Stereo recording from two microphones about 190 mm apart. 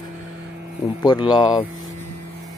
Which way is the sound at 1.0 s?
25° left (ahead or behind).